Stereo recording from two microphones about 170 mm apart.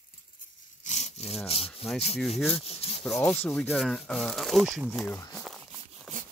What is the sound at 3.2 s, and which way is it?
Speech, 5° left (ahead or behind).